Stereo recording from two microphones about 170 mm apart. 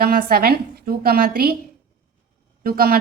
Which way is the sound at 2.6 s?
60° right (ahead or behind).